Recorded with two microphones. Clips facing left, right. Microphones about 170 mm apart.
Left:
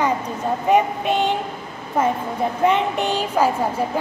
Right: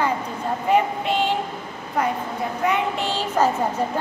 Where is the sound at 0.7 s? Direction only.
20° left (ahead or behind).